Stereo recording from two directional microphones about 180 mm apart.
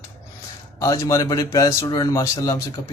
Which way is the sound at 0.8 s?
15° left (ahead or behind).